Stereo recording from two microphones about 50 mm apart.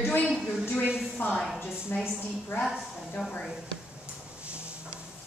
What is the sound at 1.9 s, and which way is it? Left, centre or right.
Speech, left.